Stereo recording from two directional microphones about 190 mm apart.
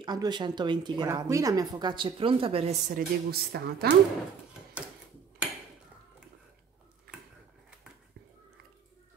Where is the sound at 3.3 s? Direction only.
55° right (ahead or behind).